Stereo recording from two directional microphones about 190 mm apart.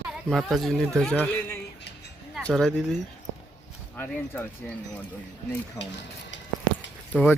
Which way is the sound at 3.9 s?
10° left (ahead or behind).